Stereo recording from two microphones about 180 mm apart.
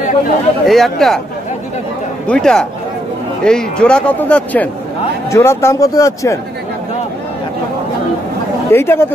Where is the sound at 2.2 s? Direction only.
5° left (ahead or behind).